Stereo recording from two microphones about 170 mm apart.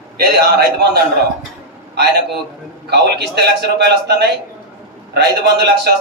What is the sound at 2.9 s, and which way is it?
A man's voice, 75° right (ahead or behind).